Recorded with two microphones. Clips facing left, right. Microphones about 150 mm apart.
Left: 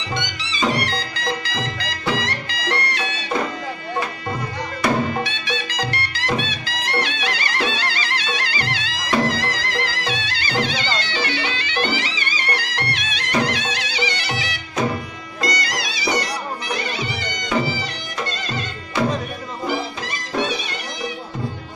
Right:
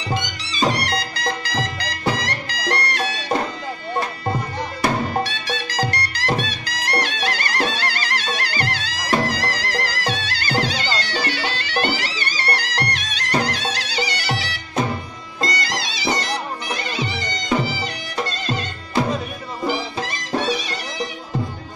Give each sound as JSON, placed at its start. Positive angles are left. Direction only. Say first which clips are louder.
{"t": 0.1, "sound": "music", "louder": "right 1 dB", "side_deg": -35}
{"t": 5.1, "sound": "music", "louder": "right 1 dB", "side_deg": -40}
{"t": 11.0, "sound": "bagpipes", "louder": "even", "side_deg": -40}
{"t": 15.4, "sound": "music", "louder": "even", "side_deg": -25}